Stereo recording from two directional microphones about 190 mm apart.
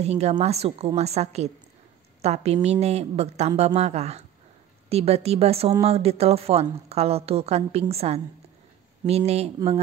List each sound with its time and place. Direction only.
0.0 s speech: 35° right (ahead or behind)